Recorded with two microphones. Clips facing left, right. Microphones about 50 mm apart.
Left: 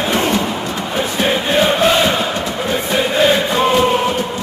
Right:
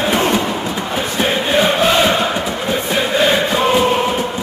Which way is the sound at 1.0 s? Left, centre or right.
Centre.